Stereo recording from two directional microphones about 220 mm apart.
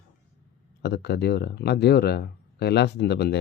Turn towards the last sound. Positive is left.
turn(degrees=45)  # may be behind; listen again after turning